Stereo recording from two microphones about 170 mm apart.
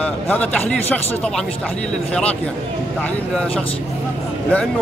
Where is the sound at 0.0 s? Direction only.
10° left (ahead or behind).